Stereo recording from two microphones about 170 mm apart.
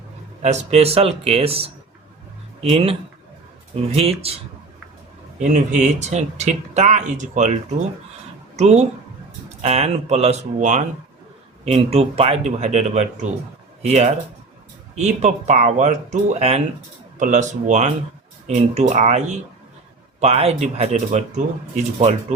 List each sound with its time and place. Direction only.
0.4 s speech: 40° right (ahead or behind)
3.9 s speech: 35° right (ahead or behind)
5.4 s speech: 45° right (ahead or behind)
8.5 s a woman's voice: 40° right (ahead or behind)